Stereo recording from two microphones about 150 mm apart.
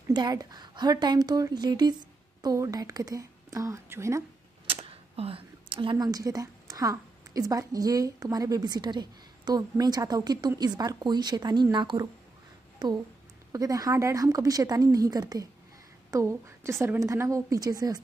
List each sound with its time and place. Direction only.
0.1 s a woman's voice: 25° right (ahead or behind)
4.6 s a woman's voice: 40° right (ahead or behind)